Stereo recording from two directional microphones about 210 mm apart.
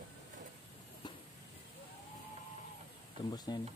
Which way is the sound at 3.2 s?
20° left (ahead or behind).